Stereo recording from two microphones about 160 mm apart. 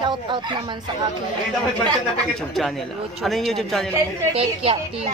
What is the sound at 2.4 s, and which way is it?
Speech, centre (ahead or behind).